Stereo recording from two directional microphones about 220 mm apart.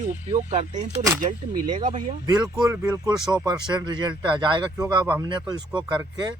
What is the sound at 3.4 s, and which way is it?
A man's voice, 20° right (ahead or behind).